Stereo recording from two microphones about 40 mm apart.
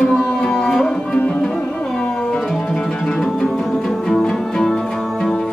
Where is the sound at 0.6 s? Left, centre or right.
Centre.